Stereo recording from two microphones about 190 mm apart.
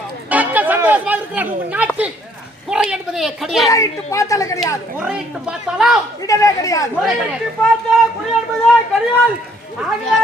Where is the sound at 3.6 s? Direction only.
15° left (ahead or behind).